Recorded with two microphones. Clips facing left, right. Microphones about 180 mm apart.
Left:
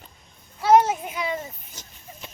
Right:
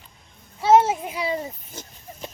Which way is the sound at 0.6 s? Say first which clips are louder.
Right 1 dB; 25° right (ahead or behind).